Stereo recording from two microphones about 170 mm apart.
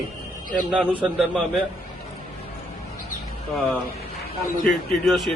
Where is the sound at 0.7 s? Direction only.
5° right (ahead or behind).